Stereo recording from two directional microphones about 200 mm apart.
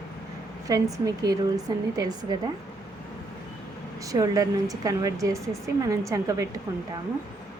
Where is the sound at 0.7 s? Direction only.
15° right (ahead or behind).